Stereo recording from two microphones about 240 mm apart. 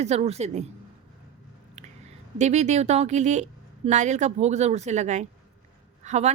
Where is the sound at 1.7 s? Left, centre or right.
Right.